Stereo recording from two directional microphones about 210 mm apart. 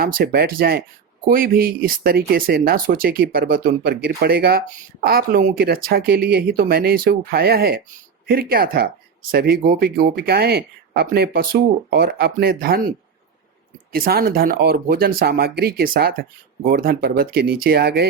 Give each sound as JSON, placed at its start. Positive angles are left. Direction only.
{"t": 0.0, "sound": "speech", "side_deg": -45}
{"t": 13.9, "sound": "speech", "side_deg": -45}